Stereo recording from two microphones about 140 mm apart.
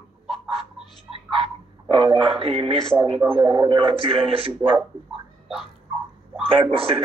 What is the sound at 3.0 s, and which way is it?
Speech, 35° right (ahead or behind).